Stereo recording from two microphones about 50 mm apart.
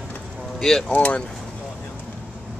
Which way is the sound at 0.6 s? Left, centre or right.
Centre.